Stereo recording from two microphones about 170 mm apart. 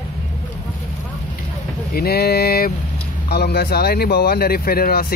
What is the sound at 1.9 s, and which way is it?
Speech, 65° left (ahead or behind).